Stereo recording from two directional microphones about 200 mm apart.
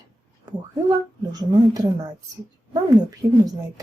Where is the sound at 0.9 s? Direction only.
20° right (ahead or behind).